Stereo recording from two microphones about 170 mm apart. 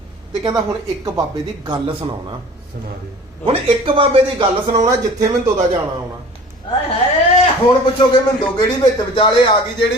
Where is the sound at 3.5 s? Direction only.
35° right (ahead or behind).